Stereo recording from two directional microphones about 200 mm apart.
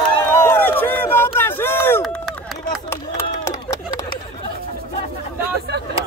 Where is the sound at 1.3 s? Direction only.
10° left (ahead or behind).